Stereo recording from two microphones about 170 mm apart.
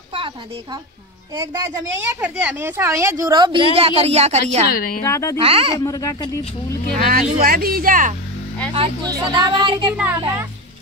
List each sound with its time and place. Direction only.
1.3 s a woman's voice: 15° right (ahead or behind); by 4.6 s 40° right (ahead or behind)
4.6 s a woman's voice: 55° left (ahead or behind)
5.0 s speech: 15° left (ahead or behind)
5.4 s speech: 35° right (ahead or behind)
5.8 s speech: 20° left (ahead or behind)
7.1 s speech: 60° right (ahead or behind)
8.7 s a woman's voice: 30° right (ahead or behind)
9.9 s speech: 10° right (ahead or behind)